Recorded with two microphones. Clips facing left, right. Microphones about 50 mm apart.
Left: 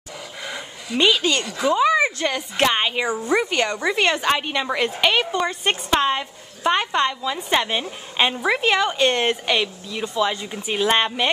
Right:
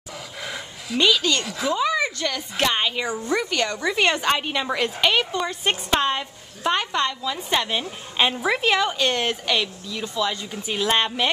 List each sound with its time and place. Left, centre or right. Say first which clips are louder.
0.4 s a sound: left 1 dB; centre
0.9 s speech: left 1 dB; centre
1.4 s a woman's voice: left 4 dB; centre
1.8 s a woman's voice: left 6 dB; centre
4.0 s a woman's voice: even; centre